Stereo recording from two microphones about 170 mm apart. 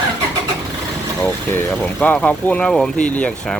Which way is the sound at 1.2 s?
10° left (ahead or behind).